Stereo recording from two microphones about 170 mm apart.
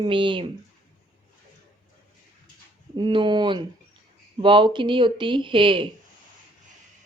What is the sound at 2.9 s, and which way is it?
Speech, 30° right (ahead or behind).